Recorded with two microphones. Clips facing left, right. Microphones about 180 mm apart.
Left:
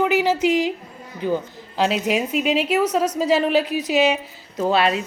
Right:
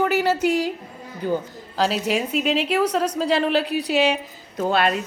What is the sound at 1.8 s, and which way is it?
Speech, 40° right (ahead or behind).